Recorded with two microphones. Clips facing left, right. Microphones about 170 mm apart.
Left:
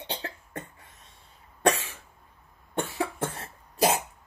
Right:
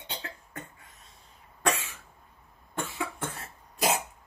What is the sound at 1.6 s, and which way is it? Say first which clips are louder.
Cough: left 5 dB; 35° left (ahead or behind).